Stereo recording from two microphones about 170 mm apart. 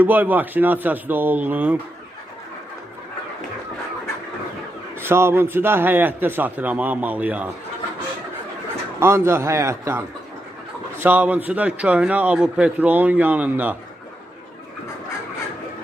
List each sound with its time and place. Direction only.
0.0 s a man's voice: 10° right (ahead or behind)
4.9 s a man's voice: 15° right (ahead or behind)
9.0 s a man's voice: 15° right (ahead or behind)
11.0 s a man's voice: 10° right (ahead or behind)